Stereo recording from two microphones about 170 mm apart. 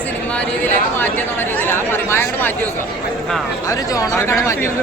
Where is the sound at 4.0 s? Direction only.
20° left (ahead or behind).